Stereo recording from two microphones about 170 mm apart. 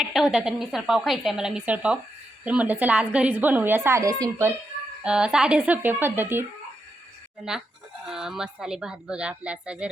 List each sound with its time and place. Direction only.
0.0 s a woman's voice: 5° right (ahead or behind)
5.0 s a woman's voice: 5° right (ahead or behind)
7.5 s speech: 5° right (ahead or behind)